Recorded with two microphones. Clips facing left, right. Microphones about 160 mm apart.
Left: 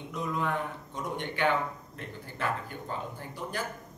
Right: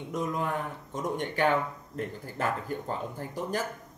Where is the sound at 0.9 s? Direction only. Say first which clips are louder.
Right 4 dB; 45° right (ahead or behind).